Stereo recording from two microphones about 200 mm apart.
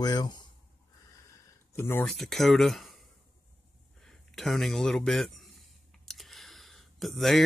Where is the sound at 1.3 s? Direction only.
15° left (ahead or behind).